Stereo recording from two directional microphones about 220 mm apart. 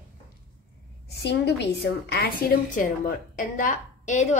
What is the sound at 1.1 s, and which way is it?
A woman's voice, 50° left (ahead or behind).